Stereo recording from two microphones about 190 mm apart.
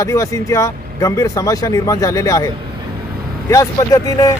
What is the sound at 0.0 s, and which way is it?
Speech, 15° left (ahead or behind).